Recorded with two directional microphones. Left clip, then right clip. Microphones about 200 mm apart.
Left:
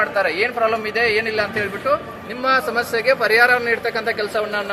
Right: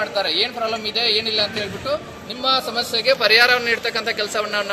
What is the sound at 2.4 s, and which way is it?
Speech, 10° left (ahead or behind).